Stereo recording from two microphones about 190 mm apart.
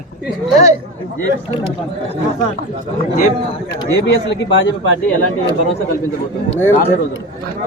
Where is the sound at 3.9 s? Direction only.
65° left (ahead or behind).